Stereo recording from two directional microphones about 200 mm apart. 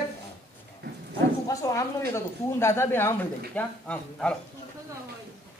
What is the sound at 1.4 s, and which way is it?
Speech, 15° left (ahead or behind).